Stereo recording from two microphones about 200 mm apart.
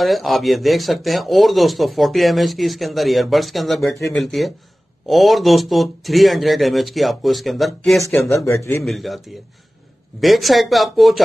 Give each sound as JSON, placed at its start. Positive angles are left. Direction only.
{"t": 0.0, "sound": "speech", "side_deg": 0}
{"t": 8.5, "sound": "a man's voice", "side_deg": 10}
{"t": 8.8, "sound": "speech", "side_deg": 0}